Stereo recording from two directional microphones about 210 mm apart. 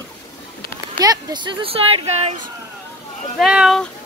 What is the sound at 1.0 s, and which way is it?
Speech, 20° right (ahead or behind).